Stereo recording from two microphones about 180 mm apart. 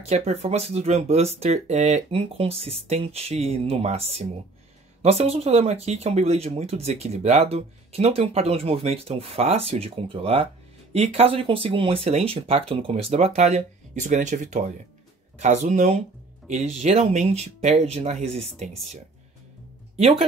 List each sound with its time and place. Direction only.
0.0 s speech: 35° right (ahead or behind)
20.0 s speech: 35° right (ahead or behind)